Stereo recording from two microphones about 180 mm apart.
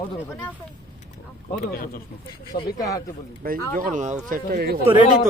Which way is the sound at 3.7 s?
45° right (ahead or behind).